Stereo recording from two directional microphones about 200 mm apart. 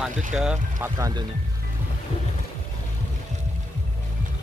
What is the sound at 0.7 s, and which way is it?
Speech, 15° right (ahead or behind).